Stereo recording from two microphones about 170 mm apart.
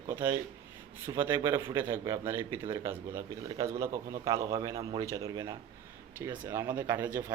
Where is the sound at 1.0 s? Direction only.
15° right (ahead or behind).